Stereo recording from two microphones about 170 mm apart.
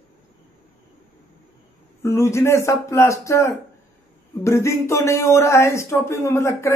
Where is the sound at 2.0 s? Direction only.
15° left (ahead or behind).